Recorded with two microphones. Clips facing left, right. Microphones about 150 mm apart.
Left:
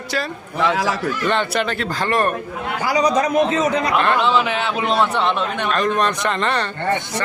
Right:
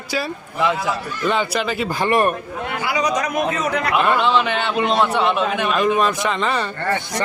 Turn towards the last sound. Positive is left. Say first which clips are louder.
# even
turn(degrees=0)  # may be behind; listen again after turning